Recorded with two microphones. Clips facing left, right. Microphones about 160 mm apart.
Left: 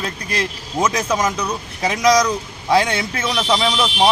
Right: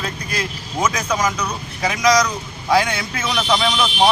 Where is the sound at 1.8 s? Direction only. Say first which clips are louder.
Left 1 dB; 25° left (ahead or behind).